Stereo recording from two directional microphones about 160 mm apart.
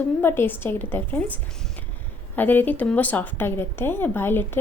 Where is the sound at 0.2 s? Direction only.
15° left (ahead or behind).